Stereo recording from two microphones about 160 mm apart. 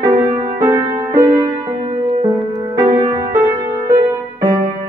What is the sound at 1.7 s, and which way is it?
Music, 40° right (ahead or behind).